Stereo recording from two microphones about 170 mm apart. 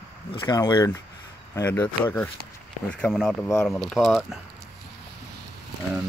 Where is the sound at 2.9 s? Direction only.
5° left (ahead or behind).